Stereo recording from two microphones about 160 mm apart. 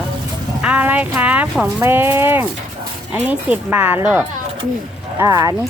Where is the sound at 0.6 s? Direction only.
10° right (ahead or behind).